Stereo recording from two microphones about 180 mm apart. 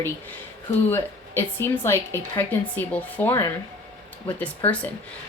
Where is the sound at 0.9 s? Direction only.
10° left (ahead or behind).